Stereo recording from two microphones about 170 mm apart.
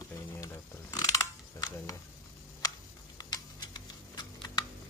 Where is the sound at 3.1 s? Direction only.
25° left (ahead or behind).